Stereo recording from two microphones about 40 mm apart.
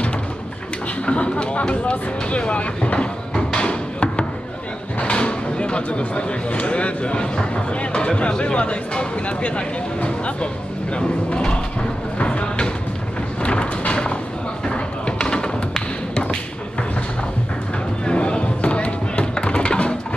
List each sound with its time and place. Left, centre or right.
1.0 s speech: left
12.2 s a sound: left
18.0 s fireworks: left
19.3 s music: left